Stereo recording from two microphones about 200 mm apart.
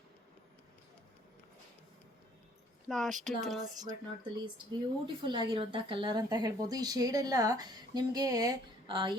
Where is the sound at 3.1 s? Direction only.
40° right (ahead or behind).